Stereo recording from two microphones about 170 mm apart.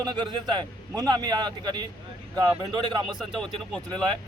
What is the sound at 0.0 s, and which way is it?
A man's voice, 25° right (ahead or behind).